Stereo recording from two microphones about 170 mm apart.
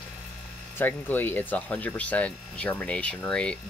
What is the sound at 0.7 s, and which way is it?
Speech, 10° left (ahead or behind).